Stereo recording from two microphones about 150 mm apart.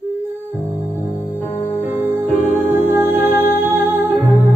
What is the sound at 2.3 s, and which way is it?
Music, 55° left (ahead or behind).